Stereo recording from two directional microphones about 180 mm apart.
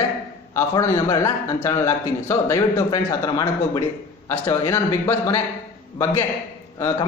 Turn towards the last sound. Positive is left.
turn(degrees=15)  # may be behind; listen again after turning